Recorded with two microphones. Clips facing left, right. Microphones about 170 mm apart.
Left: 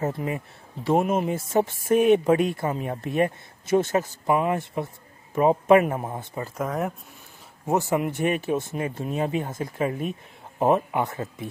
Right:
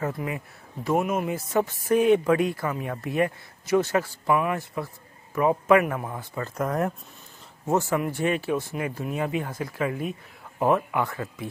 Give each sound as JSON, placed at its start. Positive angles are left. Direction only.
{"t": 0.0, "sound": "speech", "side_deg": 25}
{"t": 6.4, "sound": "speech", "side_deg": 0}
{"t": 7.6, "sound": "speech", "side_deg": 15}